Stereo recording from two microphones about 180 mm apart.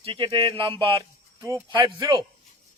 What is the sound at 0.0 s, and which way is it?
Speech, 30° right (ahead or behind).